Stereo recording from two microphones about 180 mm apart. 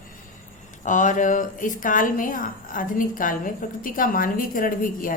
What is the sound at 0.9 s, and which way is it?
A woman's voice, 45° left (ahead or behind).